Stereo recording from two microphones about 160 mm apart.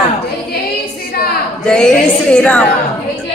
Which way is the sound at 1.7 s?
5° left (ahead or behind).